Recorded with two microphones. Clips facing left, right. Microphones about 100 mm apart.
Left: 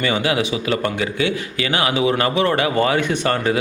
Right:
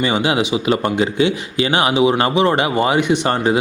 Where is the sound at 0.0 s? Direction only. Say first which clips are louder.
Right 2 dB; 20° right (ahead or behind).